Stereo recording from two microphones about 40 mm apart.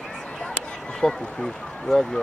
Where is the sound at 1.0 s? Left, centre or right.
Centre.